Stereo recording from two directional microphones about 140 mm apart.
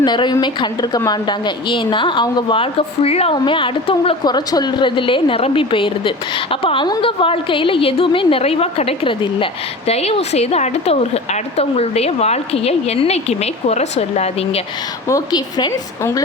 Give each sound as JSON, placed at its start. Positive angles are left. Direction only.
{"t": 0.0, "sound": "a woman's voice", "side_deg": 30}
{"t": 15.1, "sound": "a woman's voice", "side_deg": 30}